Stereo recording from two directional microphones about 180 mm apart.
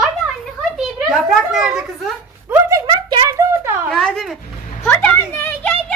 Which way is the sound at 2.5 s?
15° right (ahead or behind).